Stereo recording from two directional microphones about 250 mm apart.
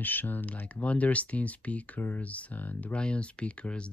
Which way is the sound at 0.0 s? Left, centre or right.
Centre.